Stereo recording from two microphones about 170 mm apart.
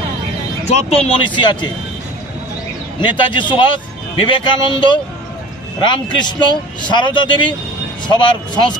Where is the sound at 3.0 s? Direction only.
30° left (ahead or behind).